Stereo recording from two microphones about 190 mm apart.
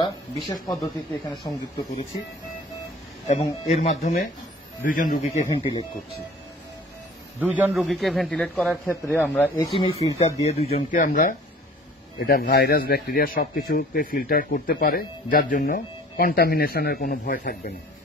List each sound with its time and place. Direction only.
0.5 s speech: 20° left (ahead or behind)
3.3 s speech: 35° left (ahead or behind)
5.2 s speech: 30° left (ahead or behind)
7.3 s a man's voice: 10° right (ahead or behind); by 9.5 s 10° left (ahead or behind)
9.6 s speech: 25° left (ahead or behind); by 17.6 s 50° left (ahead or behind)